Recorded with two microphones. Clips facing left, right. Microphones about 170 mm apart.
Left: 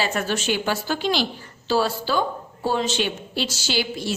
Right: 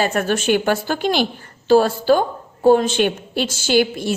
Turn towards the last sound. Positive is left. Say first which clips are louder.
# right 8 dB
turn(degrees=-55)  # may be behind; listen again after turning